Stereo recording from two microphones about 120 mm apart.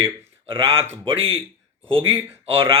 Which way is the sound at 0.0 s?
45° right (ahead or behind).